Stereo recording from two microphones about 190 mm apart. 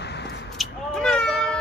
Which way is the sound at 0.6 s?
5° left (ahead or behind).